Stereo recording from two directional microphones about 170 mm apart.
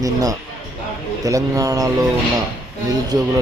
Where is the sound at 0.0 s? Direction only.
20° right (ahead or behind).